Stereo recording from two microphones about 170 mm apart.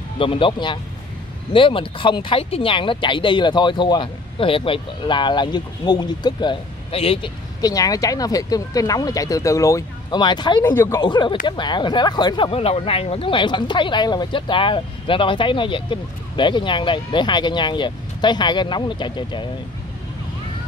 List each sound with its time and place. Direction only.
0.2 s speech: 30° left (ahead or behind)
7.6 s speech: 20° left (ahead or behind)